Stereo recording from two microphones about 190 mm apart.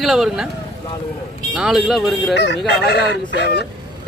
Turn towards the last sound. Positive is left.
turn(degrees=60)  # may be behind; listen again after turning